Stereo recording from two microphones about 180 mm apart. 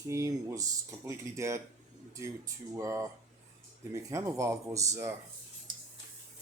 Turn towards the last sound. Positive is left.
turn(degrees=-25)  # may be behind; listen again after turning